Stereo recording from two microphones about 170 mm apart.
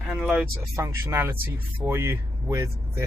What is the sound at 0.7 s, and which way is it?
Speech, 15° right (ahead or behind).